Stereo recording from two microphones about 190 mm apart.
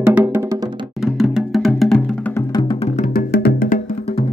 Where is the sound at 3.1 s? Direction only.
55° left (ahead or behind).